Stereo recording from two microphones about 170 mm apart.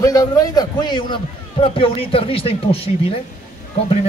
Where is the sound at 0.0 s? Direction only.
20° left (ahead or behind).